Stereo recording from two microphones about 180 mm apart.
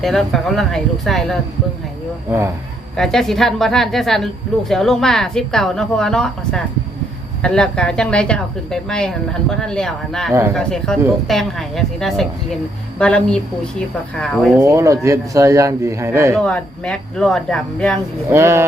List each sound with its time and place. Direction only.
0.0 s a woman's voice: centre (ahead or behind)
2.9 s a woman's voice: 5° left (ahead or behind)
14.6 s speech: 15° right (ahead or behind)
16.4 s a woman's voice: 5° left (ahead or behind)
18.3 s speech: 15° right (ahead or behind)